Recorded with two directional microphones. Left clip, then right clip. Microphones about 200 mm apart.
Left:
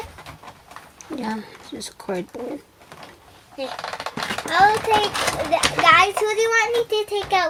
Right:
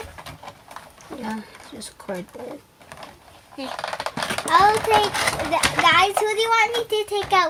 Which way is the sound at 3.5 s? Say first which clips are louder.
Left 2 dB; 15° right (ahead or behind).